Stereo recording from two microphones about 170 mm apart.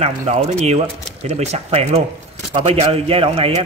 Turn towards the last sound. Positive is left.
turn(degrees=-35)  # may be behind; listen again after turning